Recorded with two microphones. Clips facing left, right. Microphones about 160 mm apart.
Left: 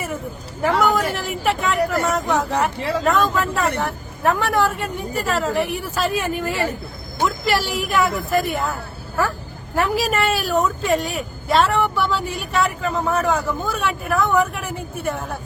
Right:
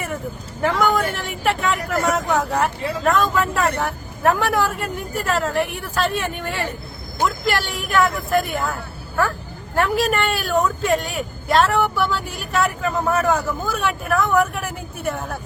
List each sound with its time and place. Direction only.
0.6 s speech: centre (ahead or behind)